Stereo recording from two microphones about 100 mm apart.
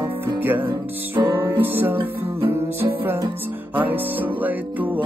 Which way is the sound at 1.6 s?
20° right (ahead or behind).